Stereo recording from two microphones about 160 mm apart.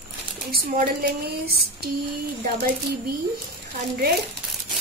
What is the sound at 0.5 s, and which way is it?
Speech, 65° right (ahead or behind).